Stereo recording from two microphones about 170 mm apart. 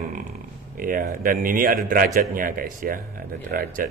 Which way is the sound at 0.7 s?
55° right (ahead or behind).